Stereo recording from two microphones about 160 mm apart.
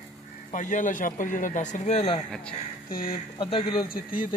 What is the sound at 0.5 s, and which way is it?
Speech, 50° left (ahead or behind).